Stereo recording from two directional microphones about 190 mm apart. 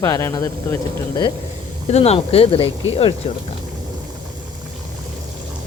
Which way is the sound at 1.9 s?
35° left (ahead or behind).